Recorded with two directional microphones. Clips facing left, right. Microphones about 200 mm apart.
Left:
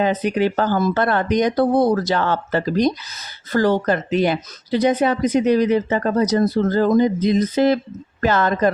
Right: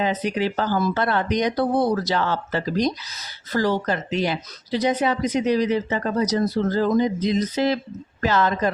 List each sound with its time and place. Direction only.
0.0 s speech: 55° left (ahead or behind)